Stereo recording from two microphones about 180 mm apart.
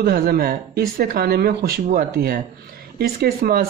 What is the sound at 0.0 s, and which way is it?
Speech, 55° right (ahead or behind).